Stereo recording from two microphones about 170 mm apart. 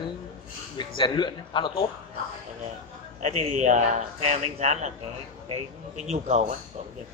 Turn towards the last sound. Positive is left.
turn(degrees=-40)  # may be behind; listen again after turning